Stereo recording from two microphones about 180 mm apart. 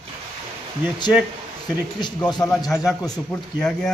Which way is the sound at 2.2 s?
25° left (ahead or behind).